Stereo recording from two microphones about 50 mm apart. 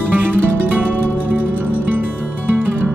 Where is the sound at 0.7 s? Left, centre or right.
Right.